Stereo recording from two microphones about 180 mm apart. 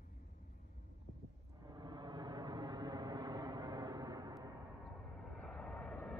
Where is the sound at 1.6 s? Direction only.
20° right (ahead or behind).